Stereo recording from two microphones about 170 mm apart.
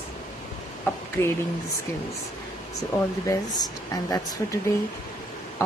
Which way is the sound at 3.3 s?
25° left (ahead or behind).